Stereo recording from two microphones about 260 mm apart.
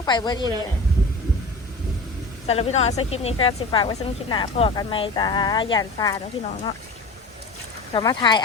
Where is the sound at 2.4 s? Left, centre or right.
Left.